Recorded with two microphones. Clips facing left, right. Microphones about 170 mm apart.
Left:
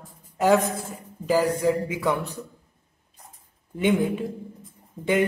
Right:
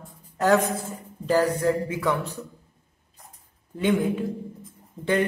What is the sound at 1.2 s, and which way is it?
Speech, 10° left (ahead or behind).